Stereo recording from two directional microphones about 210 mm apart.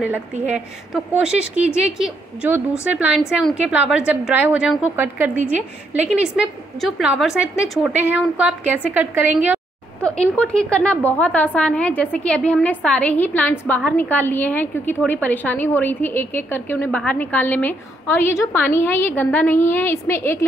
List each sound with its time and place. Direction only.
1.2 s a woman's voice: 5° right (ahead or behind)
10.0 s a woman's voice: 5° left (ahead or behind)